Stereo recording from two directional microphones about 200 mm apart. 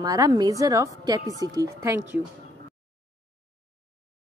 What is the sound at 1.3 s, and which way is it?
Speech, 15° left (ahead or behind).